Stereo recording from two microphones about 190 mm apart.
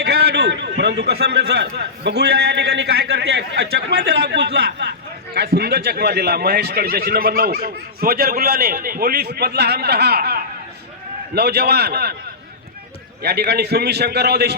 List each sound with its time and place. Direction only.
0.0 s a man's voice: 60° right (ahead or behind)
13.2 s a man's voice: 55° right (ahead or behind)